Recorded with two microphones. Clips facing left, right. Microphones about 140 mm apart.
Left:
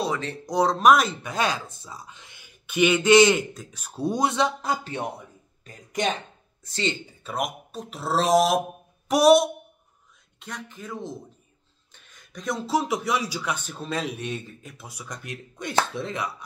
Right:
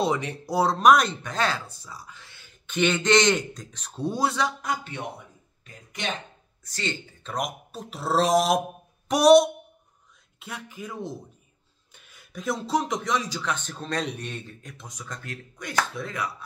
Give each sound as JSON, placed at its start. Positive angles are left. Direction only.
{"t": 0.0, "sound": "speech", "side_deg": -20}
{"t": 6.6, "sound": "speech", "side_deg": 20}
{"t": 7.2, "sound": "speech", "side_deg": 0}